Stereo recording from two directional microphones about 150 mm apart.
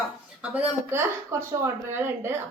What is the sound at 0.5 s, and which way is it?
A woman's voice, 15° right (ahead or behind).